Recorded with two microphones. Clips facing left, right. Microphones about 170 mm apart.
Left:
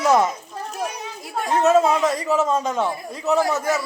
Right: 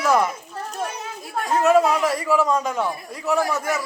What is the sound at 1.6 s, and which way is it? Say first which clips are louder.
A man's voice: left 1 dB; 25° left (ahead or behind).